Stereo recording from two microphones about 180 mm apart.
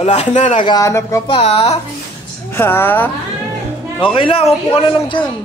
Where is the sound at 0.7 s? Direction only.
15° left (ahead or behind).